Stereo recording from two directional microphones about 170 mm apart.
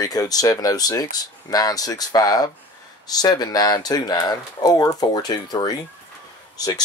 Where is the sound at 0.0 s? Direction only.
20° left (ahead or behind).